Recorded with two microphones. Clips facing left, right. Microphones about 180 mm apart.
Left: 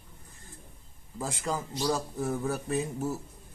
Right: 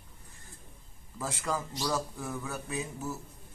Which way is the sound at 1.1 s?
20° left (ahead or behind).